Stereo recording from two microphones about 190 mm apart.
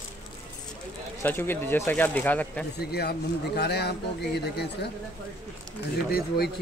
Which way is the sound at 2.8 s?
60° left (ahead or behind).